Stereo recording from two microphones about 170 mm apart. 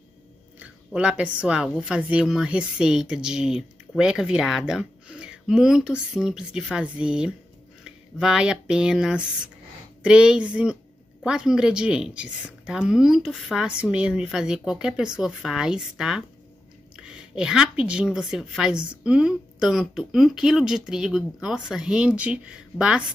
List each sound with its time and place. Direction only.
0.6 s speech: 5° right (ahead or behind)